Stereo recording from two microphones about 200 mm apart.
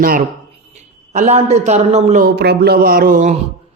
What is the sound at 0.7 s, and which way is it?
A man's voice, 35° right (ahead or behind).